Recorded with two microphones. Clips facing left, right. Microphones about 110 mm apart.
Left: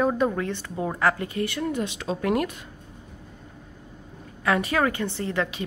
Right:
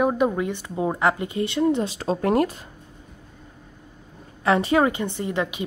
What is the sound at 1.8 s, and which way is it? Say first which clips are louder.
Speech: right 3 dB; 35° right (ahead or behind).